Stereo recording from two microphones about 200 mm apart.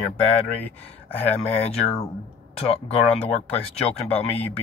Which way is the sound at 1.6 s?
30° left (ahead or behind).